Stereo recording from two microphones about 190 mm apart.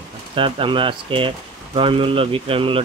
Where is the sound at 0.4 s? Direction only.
25° right (ahead or behind).